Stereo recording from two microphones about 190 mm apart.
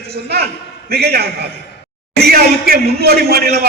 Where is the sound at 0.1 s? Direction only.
55° right (ahead or behind).